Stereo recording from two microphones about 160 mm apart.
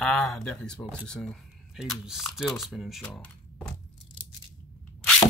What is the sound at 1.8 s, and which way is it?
Speech, centre (ahead or behind).